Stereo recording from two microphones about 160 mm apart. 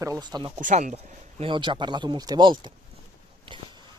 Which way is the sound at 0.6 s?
55° right (ahead or behind).